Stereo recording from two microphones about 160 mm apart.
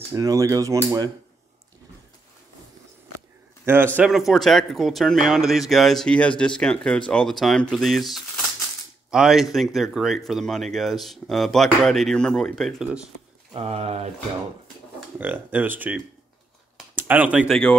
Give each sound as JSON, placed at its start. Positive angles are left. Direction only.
{"t": 0.1, "sound": "speech", "side_deg": -20}
{"t": 3.6, "sound": "speech", "side_deg": -15}
{"t": 13.5, "sound": "speech", "side_deg": -40}
{"t": 15.1, "sound": "speech", "side_deg": -10}